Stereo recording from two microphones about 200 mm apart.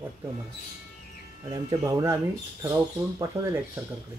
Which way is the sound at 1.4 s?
15° right (ahead or behind).